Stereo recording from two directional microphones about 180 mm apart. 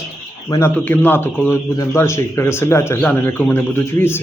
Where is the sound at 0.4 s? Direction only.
15° left (ahead or behind).